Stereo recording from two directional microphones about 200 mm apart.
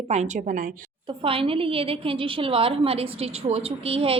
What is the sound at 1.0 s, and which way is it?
A woman's voice, 25° right (ahead or behind).